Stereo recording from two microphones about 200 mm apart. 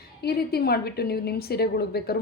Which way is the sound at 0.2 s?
50° left (ahead or behind).